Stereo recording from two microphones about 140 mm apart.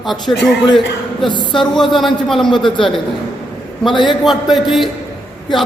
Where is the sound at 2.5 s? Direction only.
35° left (ahead or behind).